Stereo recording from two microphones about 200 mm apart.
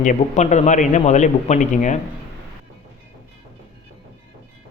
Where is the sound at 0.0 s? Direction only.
35° left (ahead or behind).